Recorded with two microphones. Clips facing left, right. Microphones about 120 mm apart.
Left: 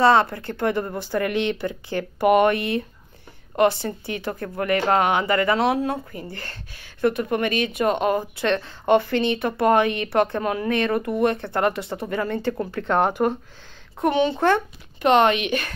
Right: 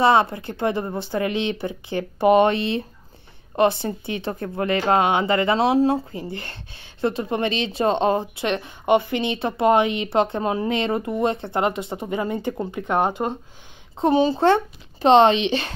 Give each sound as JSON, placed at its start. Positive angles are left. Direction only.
{"t": 0.0, "sound": "speech", "side_deg": -20}
{"t": 13.9, "sound": "speech", "side_deg": -30}